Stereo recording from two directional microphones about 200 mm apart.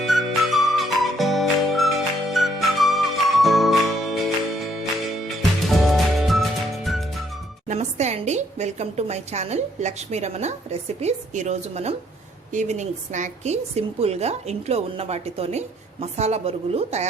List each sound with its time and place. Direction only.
0.0 s music: centre (ahead or behind)
5.6 s music: centre (ahead or behind)
7.7 s a woman's voice: 35° right (ahead or behind)